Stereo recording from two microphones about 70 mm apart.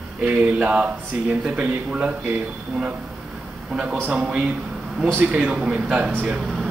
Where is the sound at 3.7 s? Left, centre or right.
Centre.